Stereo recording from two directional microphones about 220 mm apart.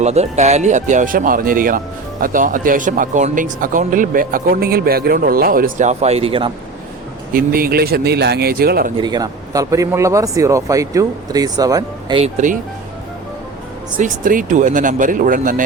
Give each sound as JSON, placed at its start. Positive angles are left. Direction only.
{"t": 0.0, "sound": "speech", "side_deg": -30}
{"t": 7.3, "sound": "speech", "side_deg": -40}
{"t": 9.0, "sound": "speech", "side_deg": -20}
{"t": 14.0, "sound": "speech", "side_deg": -35}